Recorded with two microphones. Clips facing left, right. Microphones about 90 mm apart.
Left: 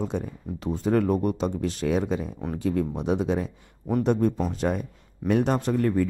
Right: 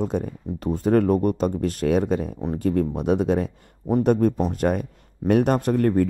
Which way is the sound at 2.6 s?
50° right (ahead or behind).